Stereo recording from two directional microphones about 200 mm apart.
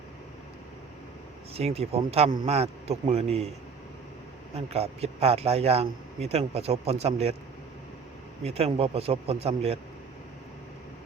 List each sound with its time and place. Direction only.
1.5 s a man's voice: 30° right (ahead or behind)
4.5 s a man's voice: 30° right (ahead or behind)
8.4 s a man's voice: 30° right (ahead or behind)